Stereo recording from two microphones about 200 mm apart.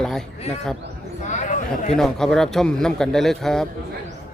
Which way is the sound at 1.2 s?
35° left (ahead or behind).